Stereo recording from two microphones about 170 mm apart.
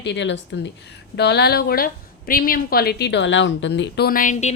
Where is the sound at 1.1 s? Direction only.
80° left.